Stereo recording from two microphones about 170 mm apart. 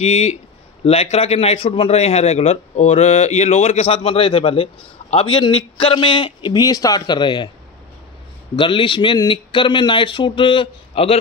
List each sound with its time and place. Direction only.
0.0 s a man's voice: 40° left (ahead or behind)
8.5 s speech: 30° left (ahead or behind)